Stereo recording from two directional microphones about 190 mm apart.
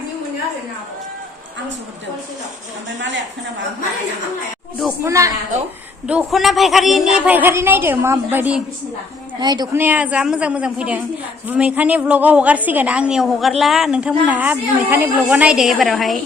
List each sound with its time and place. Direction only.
5.0 s a woman's voice: 15° right (ahead or behind)
6.1 s a woman's voice: 5° right (ahead or behind)
9.4 s a woman's voice: 20° right (ahead or behind)
9.8 s a woman's voice: 10° right (ahead or behind)